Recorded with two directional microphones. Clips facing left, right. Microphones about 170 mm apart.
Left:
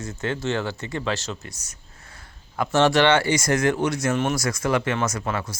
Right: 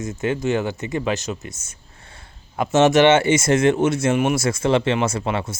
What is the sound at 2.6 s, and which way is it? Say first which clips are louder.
Speech: right 4 dB; 20° right (ahead or behind).